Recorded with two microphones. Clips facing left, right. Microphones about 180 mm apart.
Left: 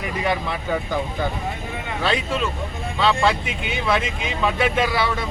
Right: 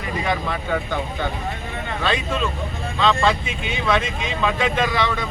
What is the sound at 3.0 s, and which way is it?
Speech, 10° left (ahead or behind).